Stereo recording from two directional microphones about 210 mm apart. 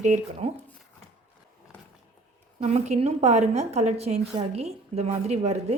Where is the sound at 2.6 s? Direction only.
30° right (ahead or behind).